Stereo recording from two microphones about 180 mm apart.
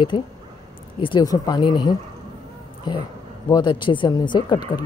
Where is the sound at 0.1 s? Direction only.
25° left (ahead or behind).